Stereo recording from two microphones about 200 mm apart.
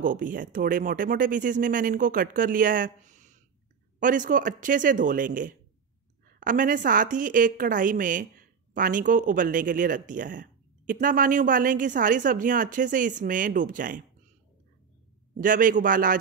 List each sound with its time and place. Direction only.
0.0 s a woman's voice: 40° right (ahead or behind)
15.3 s speech: 40° right (ahead or behind)